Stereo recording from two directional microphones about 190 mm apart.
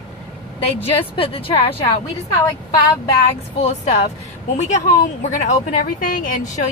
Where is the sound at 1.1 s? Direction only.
30° left (ahead or behind).